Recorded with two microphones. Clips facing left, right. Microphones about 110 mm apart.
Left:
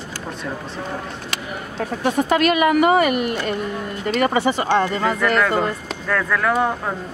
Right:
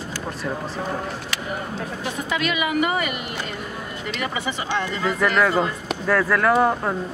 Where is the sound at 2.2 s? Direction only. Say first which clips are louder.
Left 7 dB; 50° left (ahead or behind).